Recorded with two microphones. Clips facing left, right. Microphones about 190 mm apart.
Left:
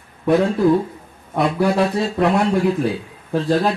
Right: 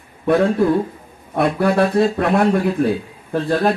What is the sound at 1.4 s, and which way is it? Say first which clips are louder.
Speech: right 1 dB; 55° right (ahead or behind).